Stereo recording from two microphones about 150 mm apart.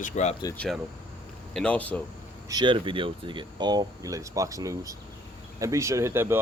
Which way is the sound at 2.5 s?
30° right (ahead or behind).